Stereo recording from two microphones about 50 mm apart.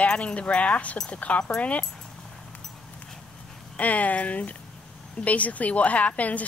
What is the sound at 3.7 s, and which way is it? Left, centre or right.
Speech, left.